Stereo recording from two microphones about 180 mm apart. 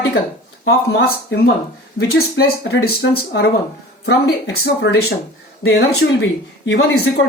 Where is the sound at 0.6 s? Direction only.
60° left (ahead or behind).